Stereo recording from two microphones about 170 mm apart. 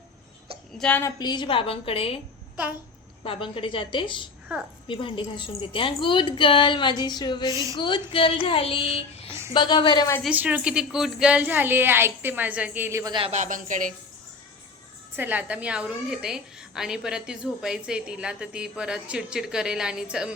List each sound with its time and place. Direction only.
0.8 s a woman's voice: 10° left (ahead or behind)
1.2 s speech: 25° left (ahead or behind)
3.2 s a woman's voice: 30° left (ahead or behind)
7.5 s speech: 20° right (ahead or behind)
7.8 s a woman's voice: 30° left (ahead or behind)
10.2 s a woman's voice: 10° right (ahead or behind)
13.1 s a woman's voice: 40° right (ahead or behind)
15.1 s a woman's voice: 10° right (ahead or behind)